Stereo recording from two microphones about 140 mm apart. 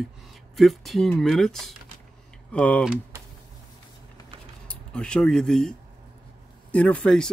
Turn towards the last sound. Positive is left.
turn(degrees=5)  # may be behind; listen again after turning